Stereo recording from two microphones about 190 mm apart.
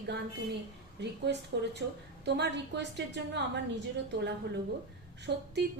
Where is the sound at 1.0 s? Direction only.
65° right (ahead or behind).